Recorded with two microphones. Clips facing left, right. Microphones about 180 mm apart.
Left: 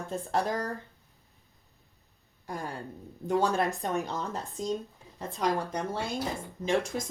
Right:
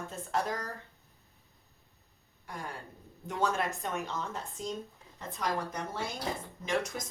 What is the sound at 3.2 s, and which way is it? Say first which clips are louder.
A woman's voice: left 5 dB; 30° left (ahead or behind).